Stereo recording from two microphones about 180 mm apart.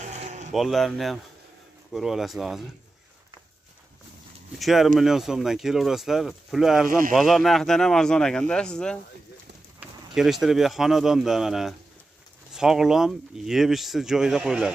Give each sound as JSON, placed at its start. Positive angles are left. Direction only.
{"t": 0.0, "sound": "music", "side_deg": -40}
{"t": 0.5, "sound": "speech", "side_deg": 0}
{"t": 4.6, "sound": "speech", "side_deg": 0}